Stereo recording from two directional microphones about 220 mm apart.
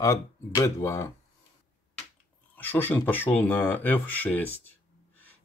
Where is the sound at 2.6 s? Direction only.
10° left (ahead or behind).